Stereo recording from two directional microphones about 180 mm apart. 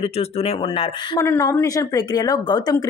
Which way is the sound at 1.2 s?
15° left (ahead or behind).